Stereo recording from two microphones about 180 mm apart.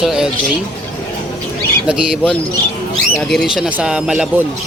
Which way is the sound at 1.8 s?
5° right (ahead or behind).